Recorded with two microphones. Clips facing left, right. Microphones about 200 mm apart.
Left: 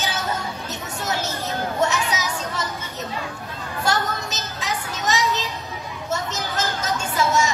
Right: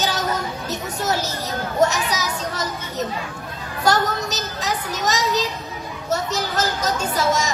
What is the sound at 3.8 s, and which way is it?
Speech, 40° right (ahead or behind).